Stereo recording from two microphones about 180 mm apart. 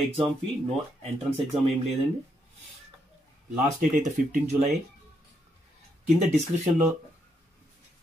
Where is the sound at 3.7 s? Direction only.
45° right (ahead or behind).